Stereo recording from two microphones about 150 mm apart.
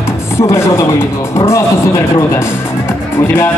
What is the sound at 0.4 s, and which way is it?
Speech, 15° left (ahead or behind).